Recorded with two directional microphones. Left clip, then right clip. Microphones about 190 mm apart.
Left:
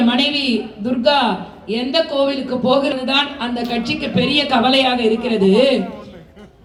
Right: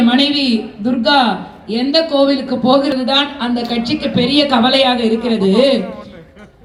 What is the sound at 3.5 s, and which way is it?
A man's voice, 40° left (ahead or behind).